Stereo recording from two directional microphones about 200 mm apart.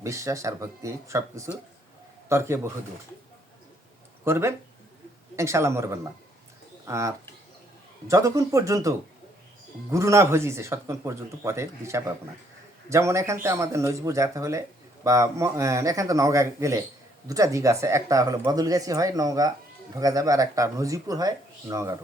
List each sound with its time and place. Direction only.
0.0 s speech: 15° right (ahead or behind)
4.2 s speech: 15° right (ahead or behind)